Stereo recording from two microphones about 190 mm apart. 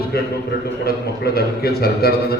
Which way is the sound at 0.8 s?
55° left (ahead or behind).